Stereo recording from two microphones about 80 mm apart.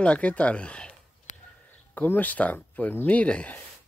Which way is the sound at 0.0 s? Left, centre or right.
Centre.